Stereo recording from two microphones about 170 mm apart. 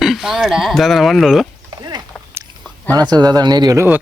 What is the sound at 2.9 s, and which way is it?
Speech, 25° right (ahead or behind).